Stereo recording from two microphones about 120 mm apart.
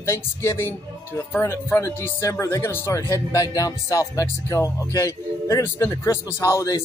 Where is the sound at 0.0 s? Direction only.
20° left (ahead or behind).